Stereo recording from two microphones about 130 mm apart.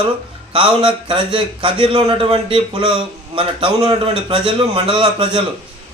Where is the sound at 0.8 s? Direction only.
40° right (ahead or behind).